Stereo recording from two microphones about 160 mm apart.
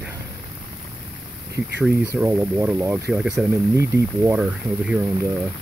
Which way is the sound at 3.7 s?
20° right (ahead or behind).